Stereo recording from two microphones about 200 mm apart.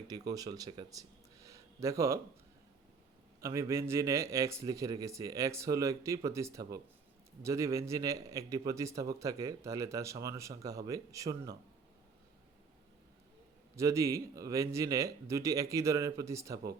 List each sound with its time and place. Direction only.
0.1 s speech: 20° right (ahead or behind)
3.4 s a man's voice: 15° right (ahead or behind)
13.7 s a man's voice: 15° right (ahead or behind)